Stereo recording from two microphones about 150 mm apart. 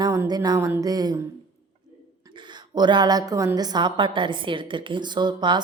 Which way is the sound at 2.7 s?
30° right (ahead or behind).